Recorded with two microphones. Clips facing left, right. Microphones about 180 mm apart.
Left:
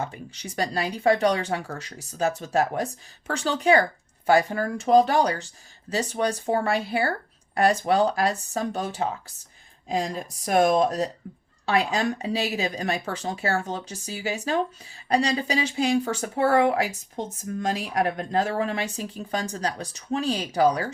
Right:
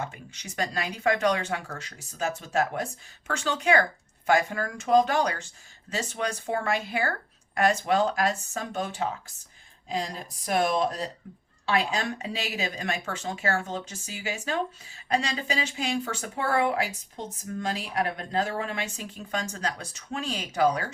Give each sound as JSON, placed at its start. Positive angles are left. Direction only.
{"t": 0.0, "sound": "speech", "side_deg": 35}
{"t": 12.2, "sound": "speech", "side_deg": 35}